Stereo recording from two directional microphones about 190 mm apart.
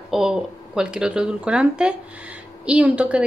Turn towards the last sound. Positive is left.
turn(degrees=-5)  # may be behind; listen again after turning